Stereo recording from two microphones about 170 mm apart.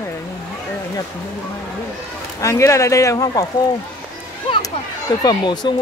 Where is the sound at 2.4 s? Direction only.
20° left (ahead or behind).